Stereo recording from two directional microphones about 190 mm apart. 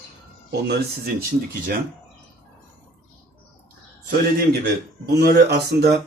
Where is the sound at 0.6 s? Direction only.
60° right (ahead or behind).